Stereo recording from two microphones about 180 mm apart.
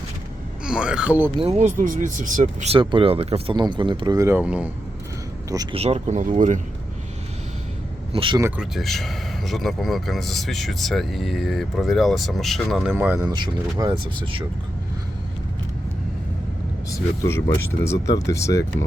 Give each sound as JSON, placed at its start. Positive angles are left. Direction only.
{"t": 0.6, "sound": "speech", "side_deg": -5}
{"t": 1.4, "sound": "speech", "side_deg": -35}
{"t": 2.7, "sound": "speech", "side_deg": -30}
{"t": 4.4, "sound": "speech", "side_deg": -5}
{"t": 5.7, "sound": "speech", "side_deg": -35}
{"t": 8.1, "sound": "speech", "side_deg": -30}
{"t": 8.4, "sound": "speech", "side_deg": -10}
{"t": 8.7, "sound": "a man's voice", "side_deg": 0}
{"t": 13.2, "sound": "speech", "side_deg": -25}
{"t": 17.8, "sound": "speech", "side_deg": 15}